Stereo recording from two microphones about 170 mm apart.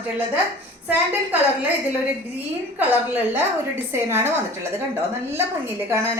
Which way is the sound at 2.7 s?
10° right (ahead or behind).